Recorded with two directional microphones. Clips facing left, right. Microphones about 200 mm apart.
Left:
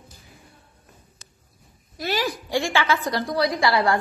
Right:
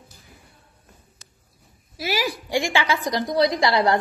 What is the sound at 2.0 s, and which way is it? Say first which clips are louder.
A woman's voice: even; 5° right (ahead or behind).